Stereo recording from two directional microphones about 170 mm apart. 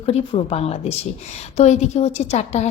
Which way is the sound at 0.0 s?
35° left (ahead or behind).